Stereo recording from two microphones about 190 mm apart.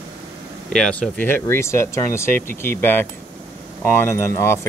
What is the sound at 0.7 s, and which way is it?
Speech, 5° left (ahead or behind).